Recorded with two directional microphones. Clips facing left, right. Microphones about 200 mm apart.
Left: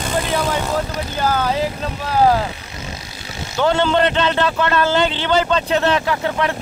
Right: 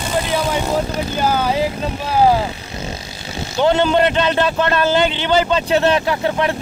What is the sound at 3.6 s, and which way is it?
A man's voice, 20° right (ahead or behind).